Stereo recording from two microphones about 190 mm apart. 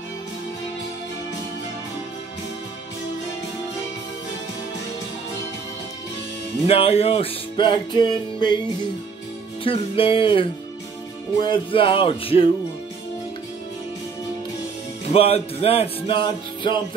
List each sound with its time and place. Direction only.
6.7 s music: 30° left (ahead or behind)
9.6 s music: 30° left (ahead or behind)
15.1 s music: 30° left (ahead or behind)